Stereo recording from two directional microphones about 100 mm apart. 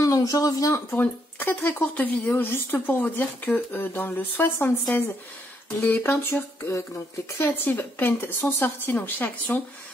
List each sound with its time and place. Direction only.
0.0 s speech: 35° left (ahead or behind)
5.8 s speech: 20° left (ahead or behind)